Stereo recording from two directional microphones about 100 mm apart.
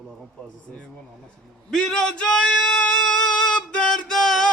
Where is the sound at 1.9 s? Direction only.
10° left (ahead or behind).